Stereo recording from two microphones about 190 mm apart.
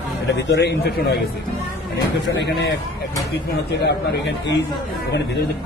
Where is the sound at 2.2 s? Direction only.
70° left (ahead or behind).